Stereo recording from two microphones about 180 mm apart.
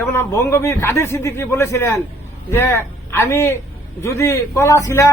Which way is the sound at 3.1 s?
15° left (ahead or behind).